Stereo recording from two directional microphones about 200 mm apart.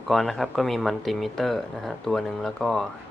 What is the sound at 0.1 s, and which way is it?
Speech, centre (ahead or behind).